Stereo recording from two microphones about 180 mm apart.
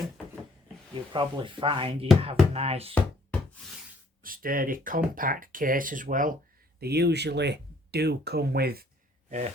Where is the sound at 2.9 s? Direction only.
5° left (ahead or behind).